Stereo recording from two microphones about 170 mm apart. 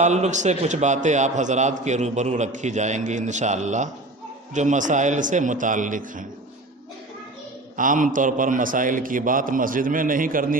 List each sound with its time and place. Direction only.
0.0 s a man's voice: 45° right (ahead or behind)
7.8 s a man's voice: 50° right (ahead or behind)